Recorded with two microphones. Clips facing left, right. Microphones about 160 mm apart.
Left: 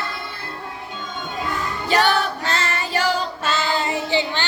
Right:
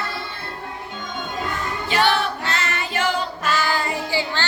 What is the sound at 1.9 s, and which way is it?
Female singing, 40° left (ahead or behind).